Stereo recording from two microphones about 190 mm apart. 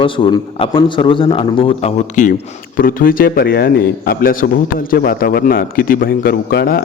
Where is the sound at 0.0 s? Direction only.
25° left (ahead or behind).